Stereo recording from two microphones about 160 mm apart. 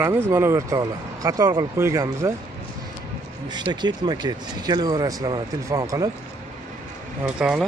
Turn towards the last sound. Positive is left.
turn(degrees=-5)  # may be behind; listen again after turning